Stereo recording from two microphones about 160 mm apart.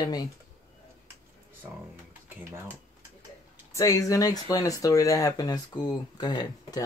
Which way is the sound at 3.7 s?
20° left (ahead or behind).